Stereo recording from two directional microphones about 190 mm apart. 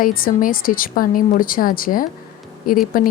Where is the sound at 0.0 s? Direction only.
50° left (ahead or behind).